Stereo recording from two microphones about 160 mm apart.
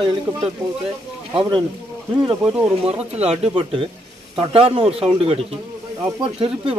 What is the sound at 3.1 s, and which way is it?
Speech, 40° right (ahead or behind).